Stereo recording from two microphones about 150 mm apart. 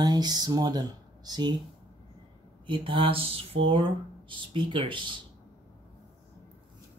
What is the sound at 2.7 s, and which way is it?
Speech, 35° right (ahead or behind).